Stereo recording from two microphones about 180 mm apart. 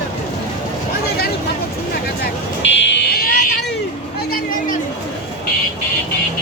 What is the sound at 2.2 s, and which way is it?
Vehicle, 80° left.